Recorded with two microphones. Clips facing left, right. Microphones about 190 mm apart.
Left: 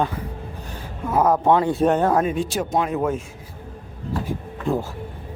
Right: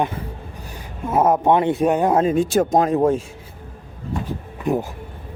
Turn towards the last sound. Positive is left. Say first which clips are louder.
# right 2 dB
turn(degrees=-15)  # may be behind; listen again after turning